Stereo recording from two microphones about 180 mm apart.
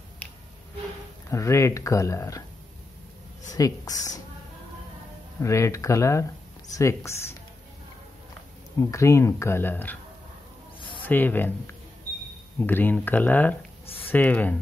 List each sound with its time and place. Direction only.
1.3 s speech: 15° left (ahead or behind)
3.5 s speech: 20° left (ahead or behind)
5.4 s speech: 15° left (ahead or behind)
8.7 s speech: 15° left (ahead or behind)
11.0 s speech: 10° left (ahead or behind)